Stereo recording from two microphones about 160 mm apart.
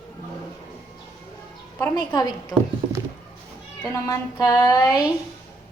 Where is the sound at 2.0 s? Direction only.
25° left (ahead or behind).